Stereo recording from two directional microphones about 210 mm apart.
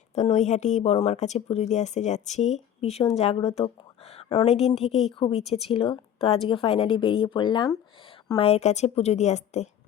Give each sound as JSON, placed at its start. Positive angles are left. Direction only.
{"t": 0.1, "sound": "a woman's voice", "side_deg": 30}